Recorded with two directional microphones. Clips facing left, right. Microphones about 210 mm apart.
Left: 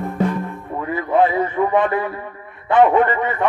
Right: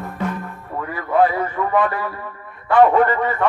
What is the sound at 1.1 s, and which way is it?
Music, 20° left (ahead or behind).